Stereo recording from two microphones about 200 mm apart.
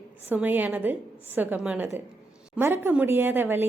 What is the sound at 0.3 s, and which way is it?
A woman's voice, 10° right (ahead or behind).